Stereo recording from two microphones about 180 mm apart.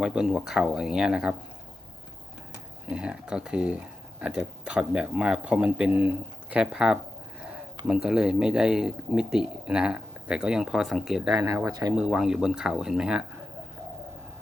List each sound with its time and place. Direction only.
0.0 s speech: 5° right (ahead or behind)
2.9 s speech: 5° right (ahead or behind)
11.3 s speech: 15° right (ahead or behind)
11.9 s speech: 5° right (ahead or behind)